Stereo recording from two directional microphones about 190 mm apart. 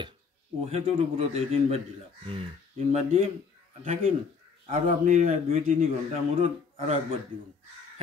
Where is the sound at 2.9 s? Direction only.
35° right (ahead or behind).